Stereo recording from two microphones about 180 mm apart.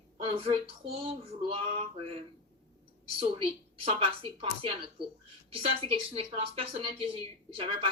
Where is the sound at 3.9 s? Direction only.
30° right (ahead or behind).